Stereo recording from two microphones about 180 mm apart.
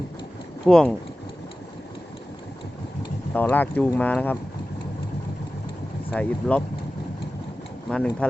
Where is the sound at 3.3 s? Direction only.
10° left (ahead or behind).